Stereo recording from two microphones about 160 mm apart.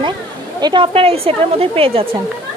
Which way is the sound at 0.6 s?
30° right (ahead or behind).